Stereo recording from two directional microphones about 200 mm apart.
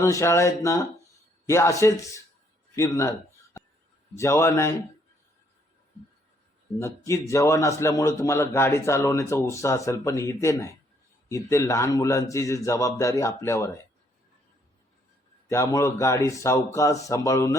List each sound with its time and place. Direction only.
0.0 s a man's voice: 15° left (ahead or behind)
6.7 s a man's voice: 15° left (ahead or behind)
15.4 s a man's voice: 15° left (ahead or behind)